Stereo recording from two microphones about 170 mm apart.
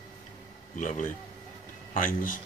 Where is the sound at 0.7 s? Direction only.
50° left (ahead or behind).